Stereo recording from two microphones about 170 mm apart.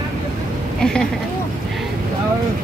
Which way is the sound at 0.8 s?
5° left (ahead or behind).